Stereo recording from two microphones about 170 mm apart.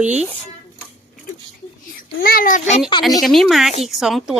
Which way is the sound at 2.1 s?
55° left (ahead or behind).